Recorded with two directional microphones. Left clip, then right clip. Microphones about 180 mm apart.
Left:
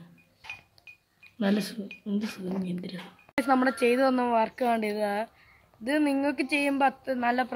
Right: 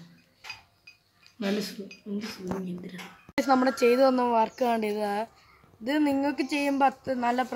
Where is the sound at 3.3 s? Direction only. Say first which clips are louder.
Right 1 dB; 5° right (ahead or behind).